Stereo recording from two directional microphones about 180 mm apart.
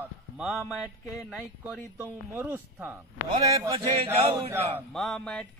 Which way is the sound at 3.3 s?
20° right (ahead or behind).